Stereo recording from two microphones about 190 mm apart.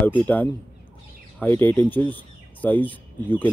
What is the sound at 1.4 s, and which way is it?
Speech, 10° left (ahead or behind).